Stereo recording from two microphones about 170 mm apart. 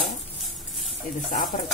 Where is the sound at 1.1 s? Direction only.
55° left (ahead or behind).